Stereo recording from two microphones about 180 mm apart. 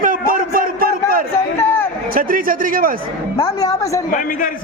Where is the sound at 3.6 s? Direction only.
15° left (ahead or behind).